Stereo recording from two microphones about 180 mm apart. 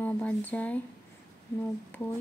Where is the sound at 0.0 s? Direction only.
10° left (ahead or behind).